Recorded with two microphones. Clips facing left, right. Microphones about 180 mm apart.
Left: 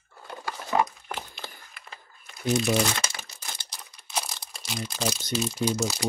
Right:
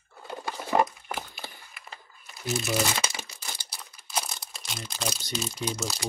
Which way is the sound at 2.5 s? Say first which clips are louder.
Left 3 dB; 5° right (ahead or behind).